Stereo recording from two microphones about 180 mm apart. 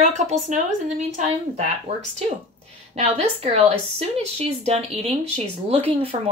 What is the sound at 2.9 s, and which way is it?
Speech, 35° right (ahead or behind).